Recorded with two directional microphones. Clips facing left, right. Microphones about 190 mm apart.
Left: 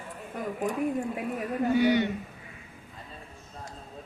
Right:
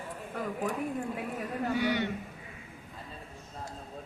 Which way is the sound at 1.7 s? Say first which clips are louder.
Left 7 dB; 20° left (ahead or behind).